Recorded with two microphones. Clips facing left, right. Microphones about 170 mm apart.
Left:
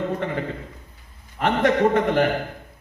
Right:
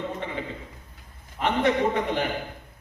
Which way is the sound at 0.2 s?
55° left (ahead or behind).